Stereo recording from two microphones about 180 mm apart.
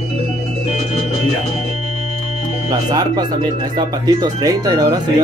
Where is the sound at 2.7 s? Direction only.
25° right (ahead or behind).